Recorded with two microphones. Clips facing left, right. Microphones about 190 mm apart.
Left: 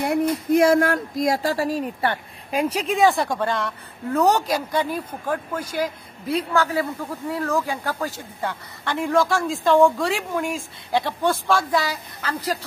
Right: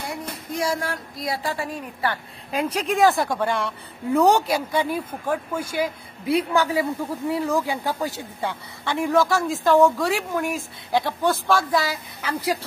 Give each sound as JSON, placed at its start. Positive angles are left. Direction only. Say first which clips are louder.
{"t": 0.0, "sound": "speech", "louder": "left 11 dB", "side_deg": 60}
{"t": 2.9, "sound": "speech", "louder": "right 1 dB", "side_deg": 0}